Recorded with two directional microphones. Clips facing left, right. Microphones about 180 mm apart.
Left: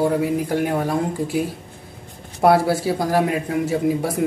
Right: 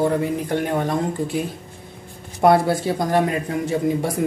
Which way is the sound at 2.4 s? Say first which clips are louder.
Even; 5° left (ahead or behind).